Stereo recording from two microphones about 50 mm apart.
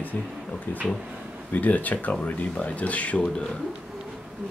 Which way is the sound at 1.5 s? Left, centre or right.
Left.